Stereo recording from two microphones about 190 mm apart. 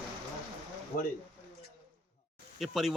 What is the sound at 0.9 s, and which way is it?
Speech, 50° left (ahead or behind).